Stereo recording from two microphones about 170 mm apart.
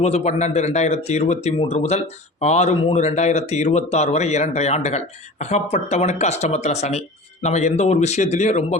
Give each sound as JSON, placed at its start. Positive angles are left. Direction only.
{"t": 0.0, "sound": "speech", "side_deg": 40}